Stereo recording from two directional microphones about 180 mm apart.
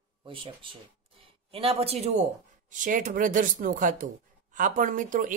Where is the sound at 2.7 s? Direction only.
45° right (ahead or behind).